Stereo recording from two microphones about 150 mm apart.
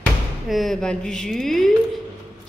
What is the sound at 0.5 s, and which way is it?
A woman's voice, centre (ahead or behind).